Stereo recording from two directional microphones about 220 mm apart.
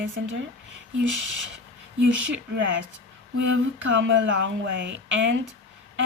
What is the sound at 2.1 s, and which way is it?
A woman's voice, 55° right (ahead or behind).